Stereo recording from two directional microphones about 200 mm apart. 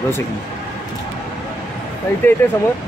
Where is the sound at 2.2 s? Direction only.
10° left (ahead or behind).